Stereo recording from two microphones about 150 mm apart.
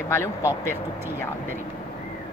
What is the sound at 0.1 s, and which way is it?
Speech, 20° left (ahead or behind).